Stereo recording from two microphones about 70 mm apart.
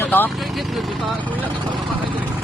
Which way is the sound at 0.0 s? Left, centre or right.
Left.